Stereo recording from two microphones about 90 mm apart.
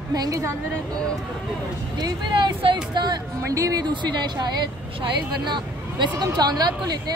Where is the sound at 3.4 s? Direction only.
40° right (ahead or behind).